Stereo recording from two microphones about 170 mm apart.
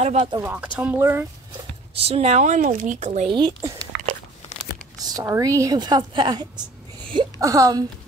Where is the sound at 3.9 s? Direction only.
90° right.